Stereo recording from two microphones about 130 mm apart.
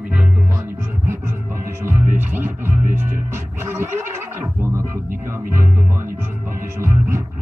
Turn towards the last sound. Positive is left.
turn(degrees=-20)  # may be behind; listen again after turning